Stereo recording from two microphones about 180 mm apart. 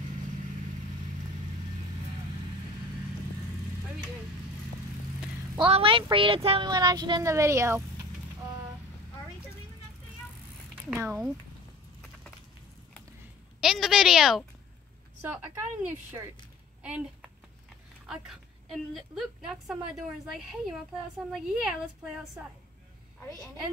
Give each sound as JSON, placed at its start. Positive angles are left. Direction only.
{"t": 5.7, "sound": "speech", "side_deg": -30}
{"t": 10.9, "sound": "a woman's voice", "side_deg": -15}
{"t": 13.6, "sound": "a woman's voice", "side_deg": 0}
{"t": 16.8, "sound": "a woman's voice", "side_deg": -5}